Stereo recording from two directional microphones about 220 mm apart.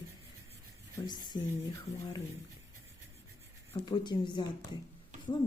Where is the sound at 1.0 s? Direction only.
20° left (ahead or behind).